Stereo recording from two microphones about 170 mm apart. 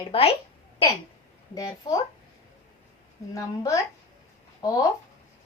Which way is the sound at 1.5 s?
20° left (ahead or behind).